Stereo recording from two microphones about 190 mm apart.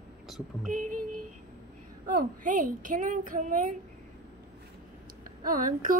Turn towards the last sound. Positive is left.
turn(degrees=-45)  # may be behind; listen again after turning